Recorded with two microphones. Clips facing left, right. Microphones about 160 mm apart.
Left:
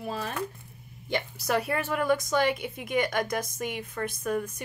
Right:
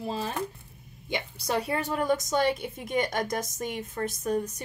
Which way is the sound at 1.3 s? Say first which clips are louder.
Even; 25° right (ahead or behind).